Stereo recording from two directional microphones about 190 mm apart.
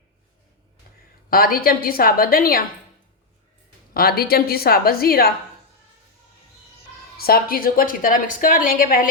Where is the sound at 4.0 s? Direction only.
50° left (ahead or behind).